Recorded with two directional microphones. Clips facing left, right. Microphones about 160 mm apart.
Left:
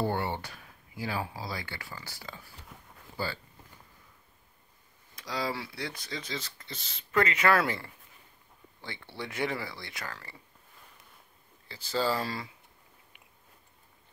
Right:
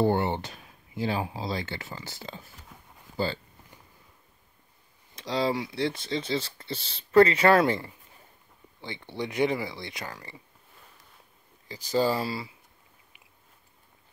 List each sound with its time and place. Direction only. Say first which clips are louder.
0.0 s speech: right 6 dB; 20° right (ahead or behind)
5.1 s speech: right 7 dB; 25° right (ahead or behind)
8.8 s speech: right 6 dB; 20° right (ahead or behind)
11.6 s speech: right 5 dB; 15° right (ahead or behind)